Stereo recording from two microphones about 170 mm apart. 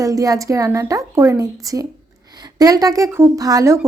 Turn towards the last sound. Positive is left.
turn(degrees=-20)  # may be behind; listen again after turning